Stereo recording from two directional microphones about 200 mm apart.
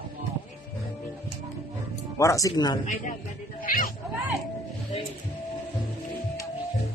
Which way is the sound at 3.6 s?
45° left (ahead or behind).